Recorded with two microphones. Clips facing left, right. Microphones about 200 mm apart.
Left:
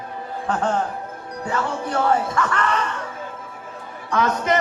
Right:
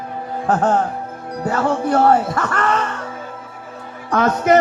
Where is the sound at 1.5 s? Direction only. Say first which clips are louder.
Right 7 dB; 45° right (ahead or behind).